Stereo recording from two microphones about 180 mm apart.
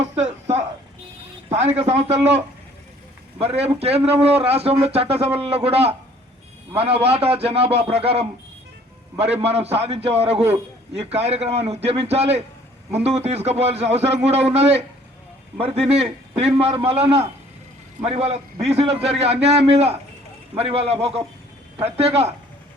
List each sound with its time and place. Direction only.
0.2 s a sound: 35° right (ahead or behind)
1.5 s a man's voice: 35° right (ahead or behind)
3.3 s a man's voice: 35° right (ahead or behind)